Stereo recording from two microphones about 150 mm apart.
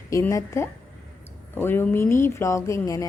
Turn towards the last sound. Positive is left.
turn(degrees=20)  # may be behind; listen again after turning